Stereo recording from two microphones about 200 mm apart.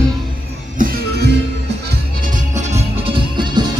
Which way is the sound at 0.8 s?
55° right (ahead or behind).